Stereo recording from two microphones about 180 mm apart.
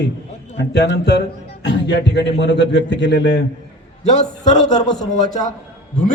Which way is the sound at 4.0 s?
40° left (ahead or behind).